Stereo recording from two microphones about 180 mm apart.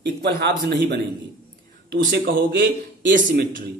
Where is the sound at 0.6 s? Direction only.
70° right (ahead or behind).